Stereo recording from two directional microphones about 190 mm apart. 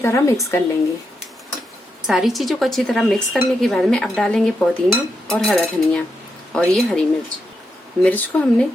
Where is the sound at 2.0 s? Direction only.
Centre (ahead or behind).